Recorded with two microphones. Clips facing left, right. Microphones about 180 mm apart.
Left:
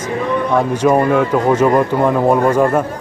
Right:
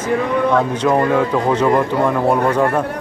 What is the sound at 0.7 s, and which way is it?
A man's voice, 15° left (ahead or behind).